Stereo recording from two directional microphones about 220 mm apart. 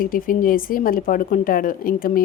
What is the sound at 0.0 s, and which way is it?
Speech, 40° left (ahead or behind).